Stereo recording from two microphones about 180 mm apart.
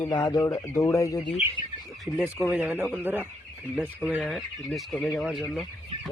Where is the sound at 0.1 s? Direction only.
20° left (ahead or behind).